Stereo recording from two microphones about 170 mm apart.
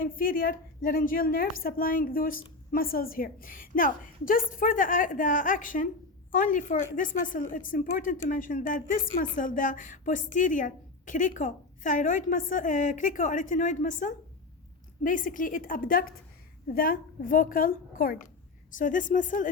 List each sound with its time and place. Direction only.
0.0 s a woman's voice: 55° left (ahead or behind)